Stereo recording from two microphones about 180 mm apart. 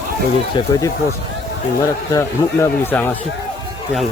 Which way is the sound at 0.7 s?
20° left (ahead or behind).